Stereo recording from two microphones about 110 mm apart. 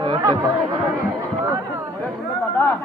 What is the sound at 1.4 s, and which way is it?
Speech, 25° right (ahead or behind).